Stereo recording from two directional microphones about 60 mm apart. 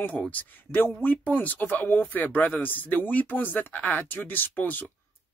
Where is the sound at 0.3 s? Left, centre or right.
Left.